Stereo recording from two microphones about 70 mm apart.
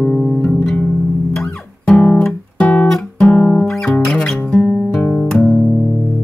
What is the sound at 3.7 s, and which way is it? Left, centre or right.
Music, centre.